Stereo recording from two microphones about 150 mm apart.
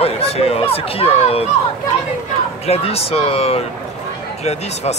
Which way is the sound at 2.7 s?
40° left (ahead or behind).